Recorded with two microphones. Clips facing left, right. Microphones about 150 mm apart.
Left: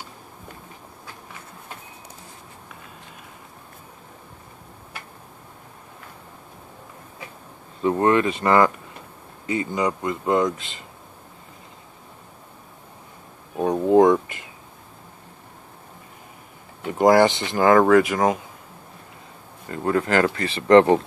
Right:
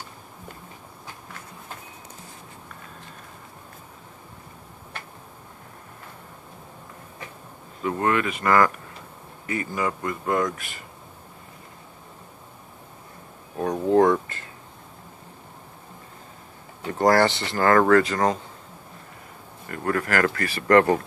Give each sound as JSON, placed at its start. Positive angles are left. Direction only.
{"t": 7.8, "sound": "speech", "side_deg": 30}
{"t": 13.6, "sound": "a sound", "side_deg": 15}
{"t": 16.8, "sound": "speech", "side_deg": 15}
{"t": 19.7, "sound": "speech", "side_deg": 20}